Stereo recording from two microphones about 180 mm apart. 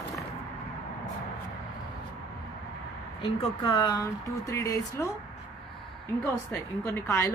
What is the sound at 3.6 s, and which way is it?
Speech, 20° left (ahead or behind).